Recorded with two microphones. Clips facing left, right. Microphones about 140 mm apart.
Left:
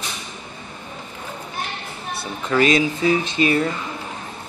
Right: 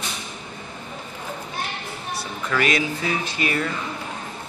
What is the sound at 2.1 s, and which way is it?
Speech, 25° left (ahead or behind).